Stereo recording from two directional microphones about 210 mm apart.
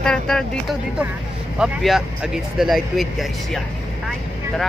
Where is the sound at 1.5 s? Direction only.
Centre (ahead or behind).